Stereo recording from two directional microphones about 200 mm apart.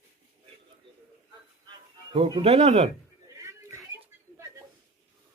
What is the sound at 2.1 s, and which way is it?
Speech, 25° right (ahead or behind).